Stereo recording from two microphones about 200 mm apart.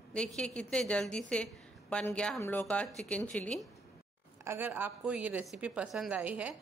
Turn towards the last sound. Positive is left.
turn(degrees=-5)  # may be behind; listen again after turning